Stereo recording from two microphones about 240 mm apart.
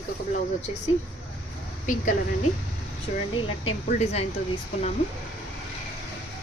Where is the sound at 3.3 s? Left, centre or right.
Left.